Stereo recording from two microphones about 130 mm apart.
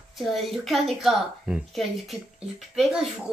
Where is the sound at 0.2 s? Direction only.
Centre (ahead or behind).